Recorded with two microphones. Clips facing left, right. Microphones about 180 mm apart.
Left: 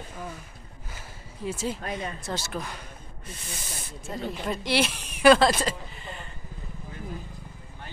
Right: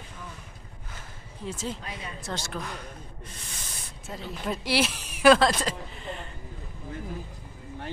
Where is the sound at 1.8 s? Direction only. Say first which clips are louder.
Left 6 dB; 50° left (ahead or behind).